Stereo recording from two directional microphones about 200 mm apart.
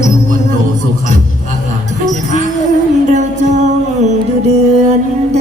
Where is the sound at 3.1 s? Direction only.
35° right (ahead or behind).